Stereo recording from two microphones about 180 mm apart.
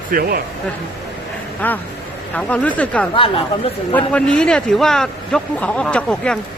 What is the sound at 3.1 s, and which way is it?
Speech, 30° left (ahead or behind).